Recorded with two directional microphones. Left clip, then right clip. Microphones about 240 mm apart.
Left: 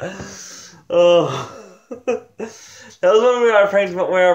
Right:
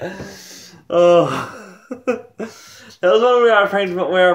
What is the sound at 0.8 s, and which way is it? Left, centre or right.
Speech, centre.